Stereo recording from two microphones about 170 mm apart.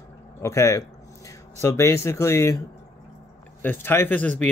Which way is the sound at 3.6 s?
15° left (ahead or behind).